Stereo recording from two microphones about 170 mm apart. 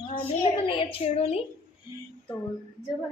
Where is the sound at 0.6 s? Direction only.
35° left (ahead or behind).